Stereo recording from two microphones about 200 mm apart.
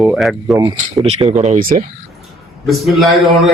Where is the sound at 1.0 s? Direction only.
35° right (ahead or behind).